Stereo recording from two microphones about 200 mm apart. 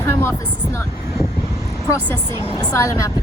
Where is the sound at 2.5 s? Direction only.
15° left (ahead or behind).